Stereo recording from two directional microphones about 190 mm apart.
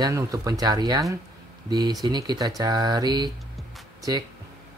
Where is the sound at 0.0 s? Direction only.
15° right (ahead or behind).